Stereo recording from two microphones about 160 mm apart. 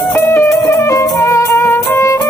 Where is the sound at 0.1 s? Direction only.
15° left (ahead or behind).